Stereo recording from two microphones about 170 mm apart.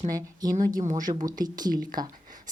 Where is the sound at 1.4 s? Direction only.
25° right (ahead or behind).